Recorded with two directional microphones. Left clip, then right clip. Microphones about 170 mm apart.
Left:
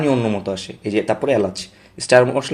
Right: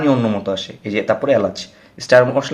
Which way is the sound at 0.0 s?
30° left (ahead or behind).